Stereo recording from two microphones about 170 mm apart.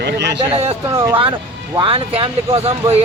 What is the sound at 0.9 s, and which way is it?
Speech, 15° right (ahead or behind).